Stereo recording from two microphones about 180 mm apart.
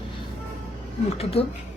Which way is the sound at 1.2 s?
35° left (ahead or behind).